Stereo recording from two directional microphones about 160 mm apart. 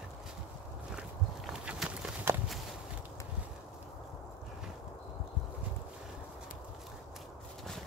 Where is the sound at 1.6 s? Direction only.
5° right (ahead or behind).